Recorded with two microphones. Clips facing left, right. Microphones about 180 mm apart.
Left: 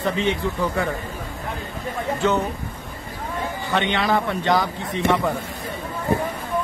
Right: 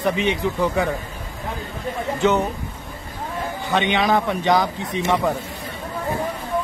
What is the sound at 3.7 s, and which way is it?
Speech, 15° right (ahead or behind).